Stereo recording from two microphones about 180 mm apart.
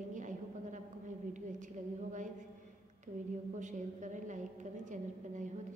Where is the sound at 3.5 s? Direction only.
45° right (ahead or behind).